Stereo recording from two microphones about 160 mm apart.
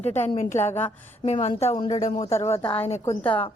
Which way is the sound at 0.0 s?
45° left (ahead or behind).